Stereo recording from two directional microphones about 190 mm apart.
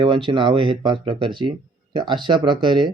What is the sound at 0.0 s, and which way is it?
Speech, 25° right (ahead or behind).